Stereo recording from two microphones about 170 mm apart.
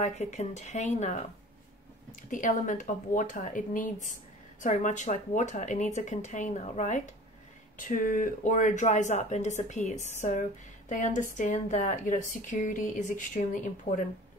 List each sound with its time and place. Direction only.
0.0 s speech: 45° left (ahead or behind)
2.3 s speech: 50° left (ahead or behind)